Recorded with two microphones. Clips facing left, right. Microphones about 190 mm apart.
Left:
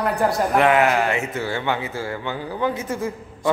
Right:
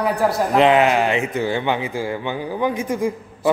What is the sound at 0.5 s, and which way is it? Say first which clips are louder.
A man's voice: right 3 dB; 20° right (ahead or behind).